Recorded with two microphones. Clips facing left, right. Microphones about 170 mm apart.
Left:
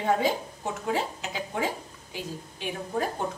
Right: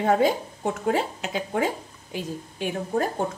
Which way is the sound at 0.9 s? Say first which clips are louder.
Right 4 dB; 60° right (ahead or behind).